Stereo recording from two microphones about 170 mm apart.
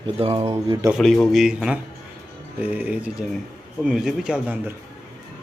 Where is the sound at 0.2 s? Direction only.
35° right (ahead or behind).